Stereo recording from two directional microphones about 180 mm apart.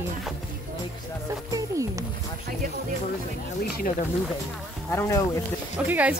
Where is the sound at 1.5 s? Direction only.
20° right (ahead or behind).